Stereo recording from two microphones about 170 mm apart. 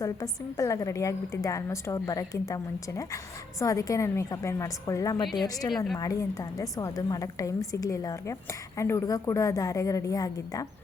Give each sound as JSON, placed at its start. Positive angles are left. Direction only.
{"t": 0.0, "sound": "a woman's voice", "side_deg": 20}
{"t": 5.7, "sound": "speech", "side_deg": 0}
{"t": 6.0, "sound": "a woman's voice", "side_deg": 20}